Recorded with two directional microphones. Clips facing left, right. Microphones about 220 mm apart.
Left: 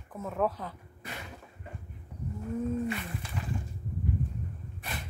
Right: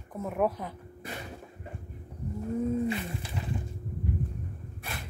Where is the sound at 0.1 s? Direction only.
15° right (ahead or behind).